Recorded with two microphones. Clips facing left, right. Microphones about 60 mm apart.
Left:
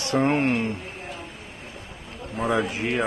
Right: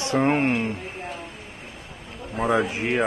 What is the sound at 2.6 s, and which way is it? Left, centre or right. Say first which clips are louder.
Speech: right 1 dB; right.